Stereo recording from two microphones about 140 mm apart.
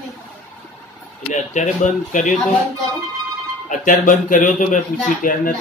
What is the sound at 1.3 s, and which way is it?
A man's voice, 60° left (ahead or behind).